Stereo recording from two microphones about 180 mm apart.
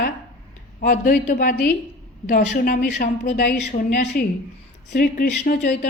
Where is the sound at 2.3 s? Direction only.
60° left (ahead or behind).